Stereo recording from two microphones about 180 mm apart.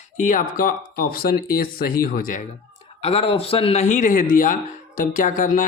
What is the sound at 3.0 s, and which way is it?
Speech, 35° left (ahead or behind).